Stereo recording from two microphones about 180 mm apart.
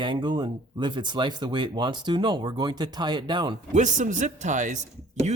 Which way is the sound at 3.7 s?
45° right (ahead or behind).